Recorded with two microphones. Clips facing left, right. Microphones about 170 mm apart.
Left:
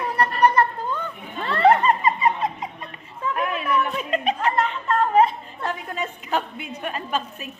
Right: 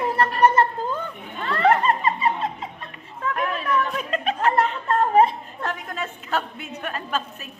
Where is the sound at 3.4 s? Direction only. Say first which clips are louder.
Left 1 dB; 10° left (ahead or behind).